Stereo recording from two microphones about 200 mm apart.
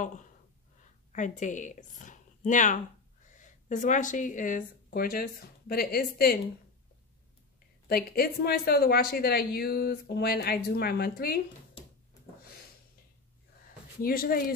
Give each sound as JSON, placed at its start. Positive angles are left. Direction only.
{"t": 0.0, "sound": "a woman's voice", "side_deg": 40}
{"t": 7.9, "sound": "a woman's voice", "side_deg": 50}
{"t": 14.0, "sound": "a woman's voice", "side_deg": 45}